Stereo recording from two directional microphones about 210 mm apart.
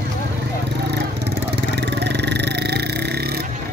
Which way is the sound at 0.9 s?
50° right (ahead or behind).